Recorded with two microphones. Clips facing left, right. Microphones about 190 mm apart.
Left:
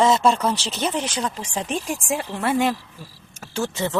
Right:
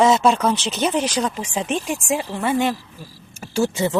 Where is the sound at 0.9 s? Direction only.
20° right (ahead or behind).